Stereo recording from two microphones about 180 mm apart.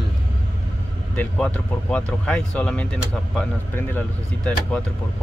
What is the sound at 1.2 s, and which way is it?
Speech, 5° left (ahead or behind).